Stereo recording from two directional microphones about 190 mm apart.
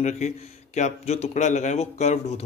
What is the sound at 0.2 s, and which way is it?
Speech, 35° left (ahead or behind).